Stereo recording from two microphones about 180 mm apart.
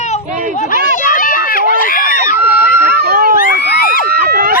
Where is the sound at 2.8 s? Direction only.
60° right (ahead or behind).